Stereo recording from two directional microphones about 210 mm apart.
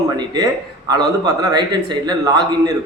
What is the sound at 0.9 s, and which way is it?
A man's voice, 20° right (ahead or behind).